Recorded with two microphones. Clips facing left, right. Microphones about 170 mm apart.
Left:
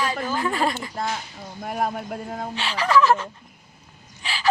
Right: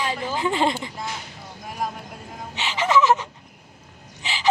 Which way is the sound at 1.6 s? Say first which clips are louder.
Left 4 dB; 55° left (ahead or behind).